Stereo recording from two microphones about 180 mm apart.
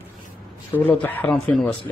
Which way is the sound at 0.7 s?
10° left (ahead or behind).